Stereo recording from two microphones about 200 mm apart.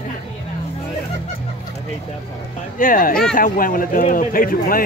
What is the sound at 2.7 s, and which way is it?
A man's voice, 45° left (ahead or behind).